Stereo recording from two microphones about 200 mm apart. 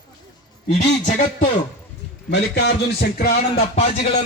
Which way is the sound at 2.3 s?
55° left (ahead or behind).